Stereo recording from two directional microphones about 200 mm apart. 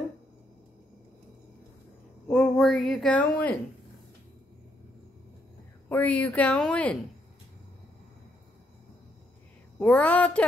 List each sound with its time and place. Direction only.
2.2 s speech: 5° left (ahead or behind)
5.9 s speech: 10° left (ahead or behind)
9.8 s speech: 5° left (ahead or behind)